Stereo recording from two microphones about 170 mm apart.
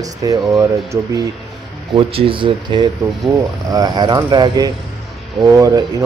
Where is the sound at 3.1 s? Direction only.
Centre (ahead or behind).